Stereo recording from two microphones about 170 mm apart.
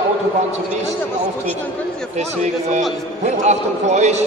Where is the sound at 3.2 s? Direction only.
40° right (ahead or behind).